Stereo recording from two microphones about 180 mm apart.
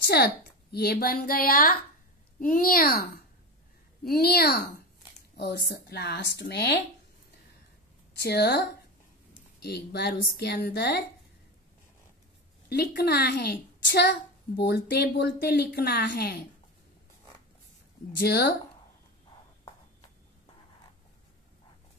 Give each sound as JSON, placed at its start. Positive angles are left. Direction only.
{"t": 0.0, "sound": "a woman's voice", "side_deg": 60}
{"t": 4.0, "sound": "a woman's voice", "side_deg": 60}
{"t": 8.2, "sound": "a woman's voice", "side_deg": 65}
{"t": 9.7, "sound": "a woman's voice", "side_deg": 65}
{"t": 12.6, "sound": "a woman's voice", "side_deg": 65}
{"t": 18.2, "sound": "a woman's voice", "side_deg": 65}